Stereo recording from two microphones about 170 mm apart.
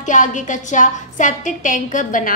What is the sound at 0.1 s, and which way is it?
A woman's voice, 45° left (ahead or behind).